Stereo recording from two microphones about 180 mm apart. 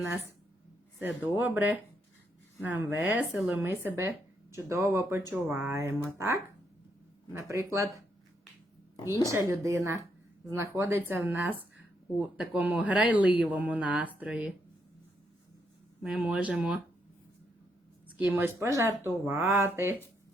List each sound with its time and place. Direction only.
1.2 s speech: 10° right (ahead or behind)
9.0 s speech: 15° right (ahead or behind)
16.0 s speech: 5° right (ahead or behind)
18.2 s speech: 10° right (ahead or behind)